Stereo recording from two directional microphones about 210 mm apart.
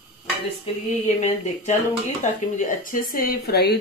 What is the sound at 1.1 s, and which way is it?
A woman's voice, 35° left (ahead or behind).